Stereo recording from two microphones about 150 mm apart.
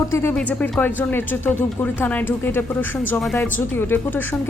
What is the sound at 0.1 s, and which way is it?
A woman's voice, 15° left (ahead or behind).